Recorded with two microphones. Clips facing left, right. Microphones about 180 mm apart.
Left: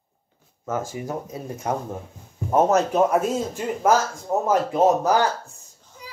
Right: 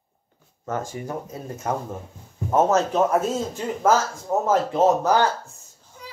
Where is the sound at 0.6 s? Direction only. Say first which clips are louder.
Left 1 dB; 5° left (ahead or behind).